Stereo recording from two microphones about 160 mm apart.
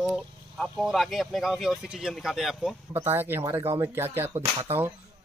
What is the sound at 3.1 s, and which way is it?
Speech, 15° right (ahead or behind).